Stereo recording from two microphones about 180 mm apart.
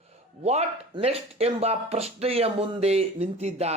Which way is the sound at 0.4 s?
35° right (ahead or behind).